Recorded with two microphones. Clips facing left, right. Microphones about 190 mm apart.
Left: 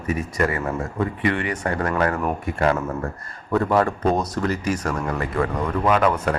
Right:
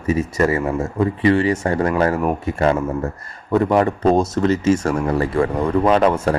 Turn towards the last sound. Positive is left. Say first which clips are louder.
# right 4 dB
turn(degrees=-30)  # may be behind; listen again after turning